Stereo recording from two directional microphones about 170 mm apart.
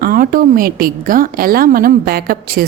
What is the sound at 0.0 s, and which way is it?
A woman's voice, 55° right (ahead or behind).